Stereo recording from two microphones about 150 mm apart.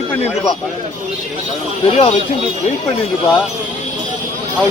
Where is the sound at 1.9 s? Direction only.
40° left (ahead or behind).